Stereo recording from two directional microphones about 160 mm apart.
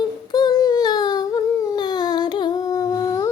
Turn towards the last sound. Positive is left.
turn(degrees=20)  # may be behind; listen again after turning